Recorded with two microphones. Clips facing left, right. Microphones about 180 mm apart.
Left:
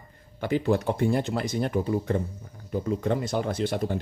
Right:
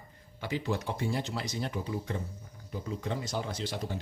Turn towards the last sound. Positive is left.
turn(degrees=55)  # may be behind; listen again after turning